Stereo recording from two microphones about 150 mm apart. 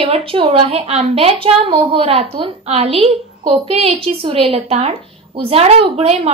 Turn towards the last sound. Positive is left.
turn(degrees=-45)  # may be behind; listen again after turning